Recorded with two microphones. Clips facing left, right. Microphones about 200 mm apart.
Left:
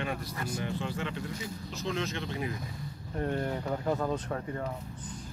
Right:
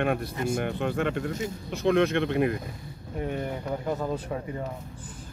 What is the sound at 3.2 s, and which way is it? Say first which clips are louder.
Speech: right 1 dB; 5° right (ahead or behind).